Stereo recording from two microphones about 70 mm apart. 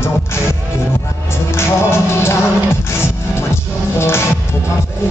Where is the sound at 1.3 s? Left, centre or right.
Left.